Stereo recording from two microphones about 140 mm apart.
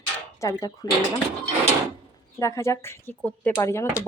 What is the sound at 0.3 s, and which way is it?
Speech, 25° left (ahead or behind).